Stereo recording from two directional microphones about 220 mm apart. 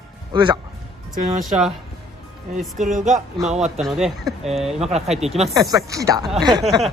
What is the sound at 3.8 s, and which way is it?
Speech, centre (ahead or behind).